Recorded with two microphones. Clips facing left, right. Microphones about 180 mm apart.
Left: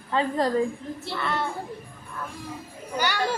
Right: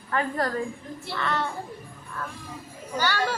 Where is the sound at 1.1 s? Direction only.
10° left (ahead or behind).